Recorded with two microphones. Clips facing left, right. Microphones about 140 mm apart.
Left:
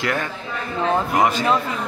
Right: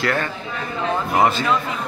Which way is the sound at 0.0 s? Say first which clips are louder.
Right 2 dB; 15° left (ahead or behind).